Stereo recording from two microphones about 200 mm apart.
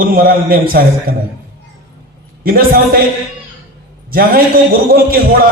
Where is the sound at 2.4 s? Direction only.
50° right (ahead or behind).